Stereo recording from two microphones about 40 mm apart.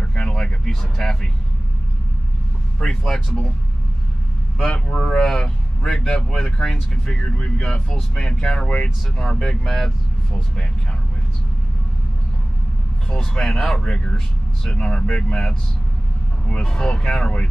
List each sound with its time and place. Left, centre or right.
0.0 s vehicle: left
0.7 s speech: centre
2.8 s speech: centre
4.6 s speech: centre
7.2 s speech: left
9.7 s speech: centre
13.1 s speech: centre